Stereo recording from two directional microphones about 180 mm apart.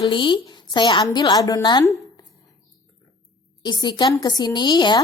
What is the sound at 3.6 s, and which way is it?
A woman's voice, 25° left (ahead or behind).